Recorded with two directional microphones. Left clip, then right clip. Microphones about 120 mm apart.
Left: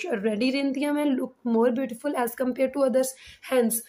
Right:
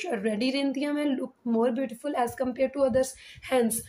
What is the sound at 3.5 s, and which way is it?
Speech, 25° left (ahead or behind).